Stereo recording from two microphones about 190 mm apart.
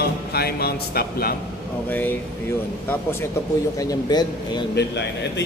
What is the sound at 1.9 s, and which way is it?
Speech, 10° left (ahead or behind).